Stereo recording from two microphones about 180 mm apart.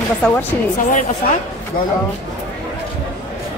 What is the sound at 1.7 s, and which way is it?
Speech, 50° left (ahead or behind).